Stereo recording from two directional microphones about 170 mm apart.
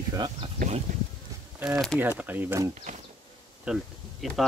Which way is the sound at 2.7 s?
45° right (ahead or behind).